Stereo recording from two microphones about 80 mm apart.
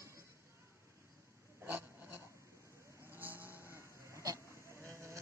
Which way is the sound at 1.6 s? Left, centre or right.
Right.